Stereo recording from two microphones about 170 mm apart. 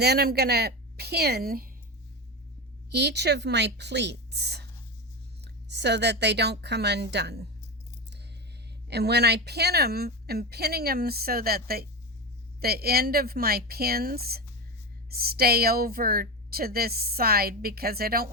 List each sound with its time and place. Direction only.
0.0 s speech: 70° right (ahead or behind)
2.9 s a woman's voice: 80° right
8.9 s a woman's voice: 75° right (ahead or behind)